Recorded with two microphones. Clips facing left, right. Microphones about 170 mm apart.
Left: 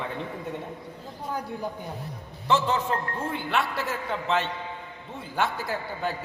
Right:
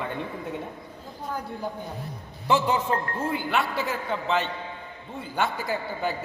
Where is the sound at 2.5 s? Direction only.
10° right (ahead or behind).